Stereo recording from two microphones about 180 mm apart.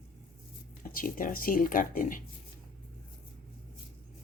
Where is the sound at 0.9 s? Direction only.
50° left (ahead or behind).